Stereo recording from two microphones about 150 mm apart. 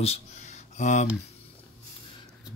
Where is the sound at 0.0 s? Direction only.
45° left (ahead or behind).